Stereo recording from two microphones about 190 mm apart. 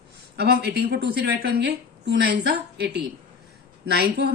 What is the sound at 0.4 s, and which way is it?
Speech, 55° right (ahead or behind).